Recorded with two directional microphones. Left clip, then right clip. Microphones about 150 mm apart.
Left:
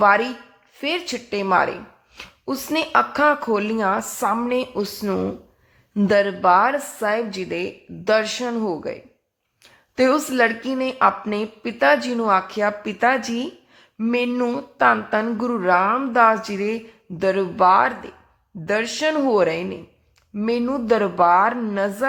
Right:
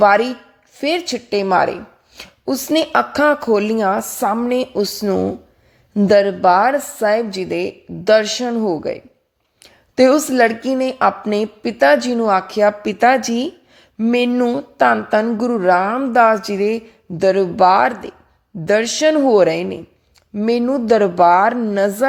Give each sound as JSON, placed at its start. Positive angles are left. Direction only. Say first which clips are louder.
{"t": 0.0, "sound": "a woman's voice", "louder": "right 4 dB", "side_deg": -30}